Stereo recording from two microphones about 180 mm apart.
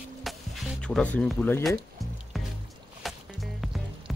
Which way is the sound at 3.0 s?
Centre (ahead or behind).